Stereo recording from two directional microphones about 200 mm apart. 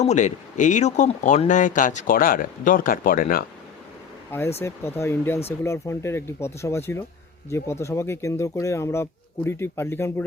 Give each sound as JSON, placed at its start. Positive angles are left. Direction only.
{"t": 0.0, "sound": "speech", "side_deg": 35}
{"t": 4.3, "sound": "speech", "side_deg": 10}